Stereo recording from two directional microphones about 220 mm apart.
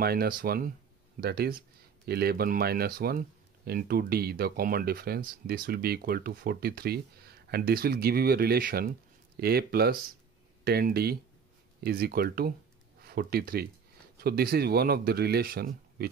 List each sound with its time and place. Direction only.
0.0 s speech: 45° right (ahead or behind)